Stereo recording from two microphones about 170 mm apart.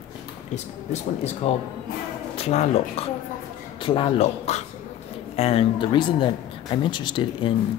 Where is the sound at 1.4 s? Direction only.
40° left (ahead or behind).